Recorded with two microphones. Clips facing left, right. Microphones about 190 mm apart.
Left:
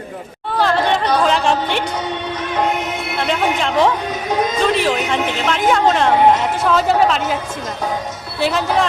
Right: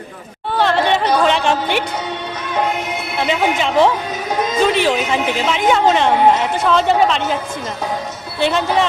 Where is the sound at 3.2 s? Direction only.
Centre (ahead or behind).